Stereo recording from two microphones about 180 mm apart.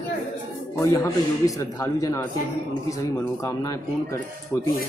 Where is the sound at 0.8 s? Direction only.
20° left (ahead or behind).